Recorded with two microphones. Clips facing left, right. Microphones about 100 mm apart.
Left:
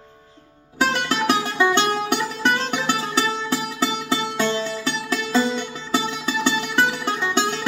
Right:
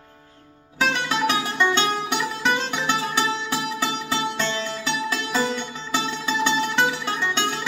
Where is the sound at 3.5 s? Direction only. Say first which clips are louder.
Left 2 dB; 15° left (ahead or behind).